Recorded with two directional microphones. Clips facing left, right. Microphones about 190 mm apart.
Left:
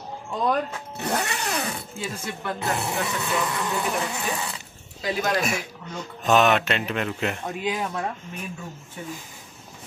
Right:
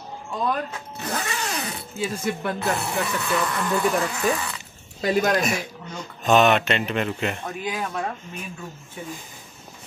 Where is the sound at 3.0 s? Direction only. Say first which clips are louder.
Right 2 dB; 20° left (ahead or behind).